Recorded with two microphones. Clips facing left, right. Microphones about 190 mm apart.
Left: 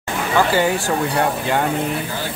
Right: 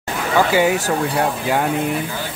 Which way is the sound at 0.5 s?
10° right (ahead or behind).